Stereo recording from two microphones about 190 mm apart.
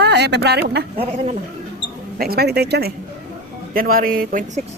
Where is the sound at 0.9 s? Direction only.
30° right (ahead or behind).